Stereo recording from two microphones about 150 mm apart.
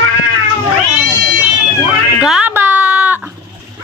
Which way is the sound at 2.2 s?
10° right (ahead or behind).